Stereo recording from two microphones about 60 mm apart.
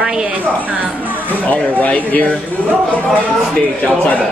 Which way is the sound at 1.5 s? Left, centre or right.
Left.